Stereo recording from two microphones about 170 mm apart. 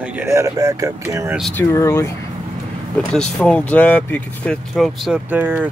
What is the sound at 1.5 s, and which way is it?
Speech, 15° left (ahead or behind).